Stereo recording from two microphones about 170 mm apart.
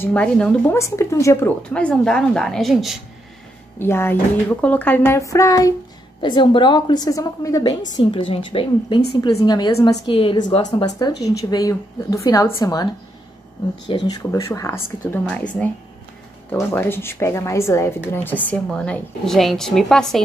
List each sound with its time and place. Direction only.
0.0 s a woman's voice: 5° left (ahead or behind)
0.7 s a woman's voice: 15° left (ahead or behind); by 3.0 s centre (ahead or behind)
3.8 s a woman's voice: 15° left (ahead or behind)
6.2 s a woman's voice: 30° left (ahead or behind)
10.1 s a woman's voice: 30° left (ahead or behind)
13.8 s a woman's voice: 25° left (ahead or behind); by 20.2 s centre (ahead or behind)